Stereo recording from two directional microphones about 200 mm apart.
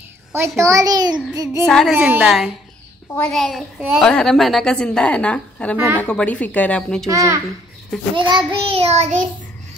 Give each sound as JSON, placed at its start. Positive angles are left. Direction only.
{"t": 0.3, "sound": "a child's voice", "side_deg": -15}
{"t": 1.7, "sound": "a woman's voice", "side_deg": 0}
{"t": 2.0, "sound": "a woman's voice", "side_deg": -10}
{"t": 7.1, "sound": "a child's voice", "side_deg": -15}
{"t": 8.2, "sound": "child singing", "side_deg": -20}